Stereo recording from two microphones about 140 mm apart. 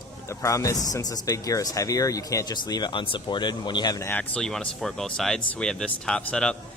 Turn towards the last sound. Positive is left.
turn(degrees=10)  # may be behind; listen again after turning